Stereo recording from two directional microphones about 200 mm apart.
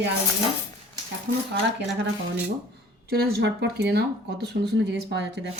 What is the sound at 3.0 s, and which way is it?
Speech, 50° right (ahead or behind).